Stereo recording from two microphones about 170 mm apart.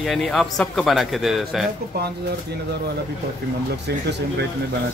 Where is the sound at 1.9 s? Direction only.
70° right (ahead or behind).